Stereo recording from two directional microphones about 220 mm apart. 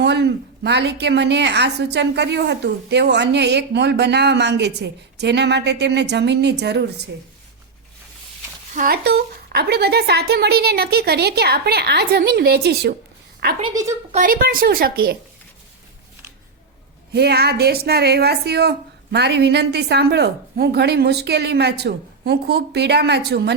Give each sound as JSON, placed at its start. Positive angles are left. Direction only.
{"t": 0.0, "sound": "a woman's voice", "side_deg": -50}
{"t": 8.7, "sound": "a woman's voice", "side_deg": -40}
{"t": 13.6, "sound": "a woman's voice", "side_deg": -15}
{"t": 14.1, "sound": "speech", "side_deg": -40}
{"t": 17.1, "sound": "a woman's voice", "side_deg": -45}